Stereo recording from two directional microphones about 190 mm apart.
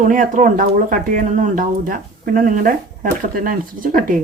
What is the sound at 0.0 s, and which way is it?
Speech, 40° right (ahead or behind).